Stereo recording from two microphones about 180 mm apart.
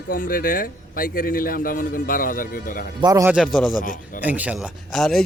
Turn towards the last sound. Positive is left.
turn(degrees=0)  # may be behind; listen again after turning